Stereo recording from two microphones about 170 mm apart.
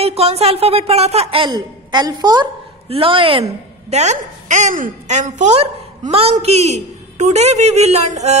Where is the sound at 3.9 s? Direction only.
40° right (ahead or behind).